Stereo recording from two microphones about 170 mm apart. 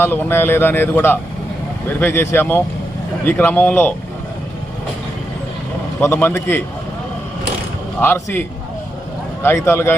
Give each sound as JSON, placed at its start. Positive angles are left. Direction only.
{"t": 0.0, "sound": "speech", "side_deg": 15}
{"t": 6.0, "sound": "speech", "side_deg": 10}
{"t": 8.0, "sound": "speech", "side_deg": 10}